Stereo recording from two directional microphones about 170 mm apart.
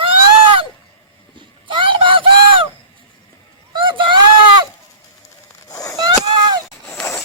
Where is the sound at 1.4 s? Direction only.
30° right (ahead or behind).